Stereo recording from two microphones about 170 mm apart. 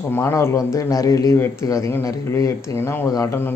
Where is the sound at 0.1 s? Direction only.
15° left (ahead or behind).